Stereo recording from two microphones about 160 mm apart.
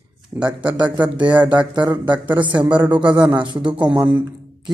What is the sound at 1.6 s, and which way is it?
Speech, 30° right (ahead or behind).